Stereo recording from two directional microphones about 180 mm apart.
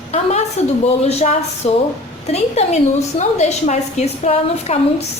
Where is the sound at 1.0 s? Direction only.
40° left (ahead or behind).